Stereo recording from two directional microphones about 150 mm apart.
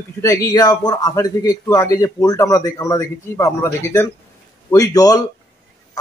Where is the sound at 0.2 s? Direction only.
20° left (ahead or behind).